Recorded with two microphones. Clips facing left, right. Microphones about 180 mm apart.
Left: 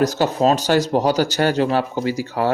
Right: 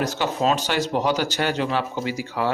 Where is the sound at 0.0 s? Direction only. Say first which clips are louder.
Left 6 dB; 40° left (ahead or behind).